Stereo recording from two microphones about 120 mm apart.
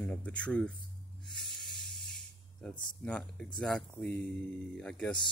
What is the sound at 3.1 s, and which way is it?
Speech, 10° left (ahead or behind).